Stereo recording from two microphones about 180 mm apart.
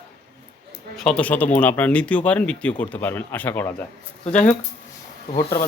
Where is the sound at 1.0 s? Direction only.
5° left (ahead or behind).